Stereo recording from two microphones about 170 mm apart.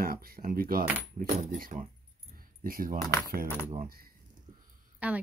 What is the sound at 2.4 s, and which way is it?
Keys jangling, 55° right (ahead or behind).